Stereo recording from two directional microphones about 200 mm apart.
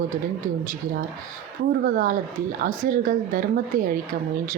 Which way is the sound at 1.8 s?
45° right (ahead or behind).